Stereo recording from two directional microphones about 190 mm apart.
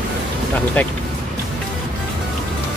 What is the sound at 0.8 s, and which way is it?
Speech, 10° left (ahead or behind).